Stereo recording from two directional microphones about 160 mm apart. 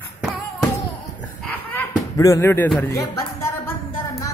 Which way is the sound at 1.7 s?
20° left (ahead or behind).